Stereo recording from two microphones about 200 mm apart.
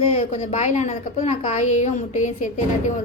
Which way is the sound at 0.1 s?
35° left (ahead or behind).